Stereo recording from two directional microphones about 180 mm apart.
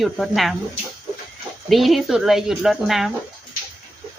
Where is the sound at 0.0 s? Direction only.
Centre (ahead or behind).